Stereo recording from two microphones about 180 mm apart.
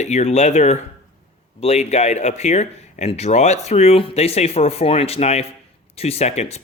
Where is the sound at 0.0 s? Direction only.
40° left (ahead or behind).